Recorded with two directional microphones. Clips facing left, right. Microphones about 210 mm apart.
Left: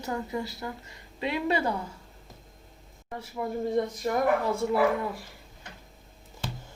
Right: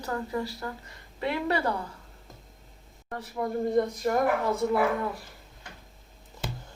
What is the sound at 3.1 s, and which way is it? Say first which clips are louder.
Speech: right 2 dB; 5° left (ahead or behind).